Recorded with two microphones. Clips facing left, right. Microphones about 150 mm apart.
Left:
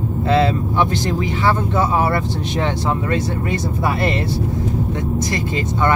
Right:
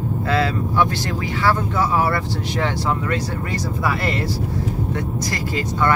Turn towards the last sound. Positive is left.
turn(degrees=25)  # may be behind; listen again after turning